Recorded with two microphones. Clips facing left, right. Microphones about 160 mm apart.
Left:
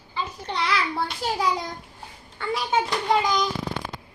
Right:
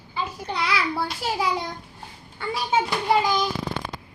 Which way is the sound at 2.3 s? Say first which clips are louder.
Even; 5° right (ahead or behind).